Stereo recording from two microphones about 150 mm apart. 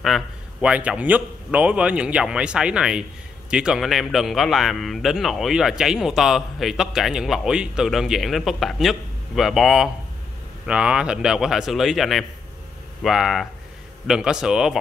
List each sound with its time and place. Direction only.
0.0 s a man's voice: 5° right (ahead or behind)